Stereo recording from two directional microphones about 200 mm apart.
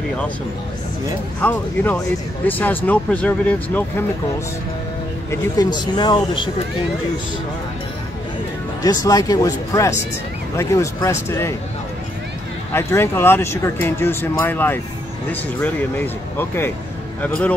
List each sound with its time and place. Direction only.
1.4 s speech: 5° left (ahead or behind)
5.3 s speech: 20° left (ahead or behind)
8.8 s speech: 20° left (ahead or behind)
12.7 s speech: 10° left (ahead or behind)